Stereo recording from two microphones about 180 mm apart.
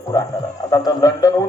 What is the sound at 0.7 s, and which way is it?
Speech, 20° left (ahead or behind).